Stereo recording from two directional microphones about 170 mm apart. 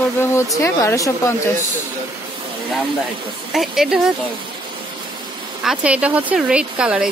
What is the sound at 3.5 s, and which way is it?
Speech, centre (ahead or behind).